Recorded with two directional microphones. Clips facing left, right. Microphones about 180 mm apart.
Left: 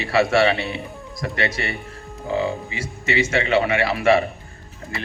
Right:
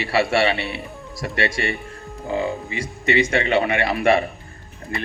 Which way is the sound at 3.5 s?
55° right (ahead or behind).